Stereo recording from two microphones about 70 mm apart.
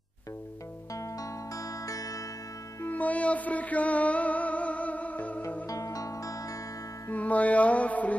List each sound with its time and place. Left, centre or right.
0.9 s music: left
2.8 s music: left
5.7 s music: left
7.1 s music: left